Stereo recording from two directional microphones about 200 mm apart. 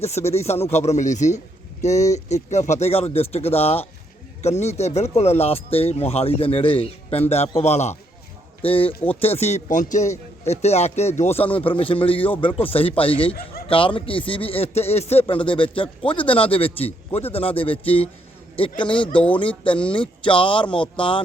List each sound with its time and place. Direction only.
0.0 s speech: 30° left (ahead or behind)
19.1 s speech: 5° left (ahead or behind)
19.4 s speech: 25° left (ahead or behind)